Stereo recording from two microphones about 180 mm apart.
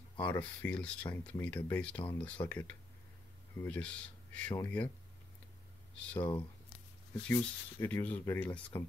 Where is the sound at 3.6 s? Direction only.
5° left (ahead or behind).